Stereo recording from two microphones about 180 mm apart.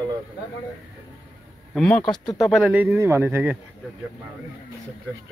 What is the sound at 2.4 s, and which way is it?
Speech, 5° right (ahead or behind).